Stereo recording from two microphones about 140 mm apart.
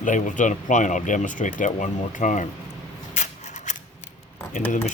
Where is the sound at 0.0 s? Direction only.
65° left (ahead or behind).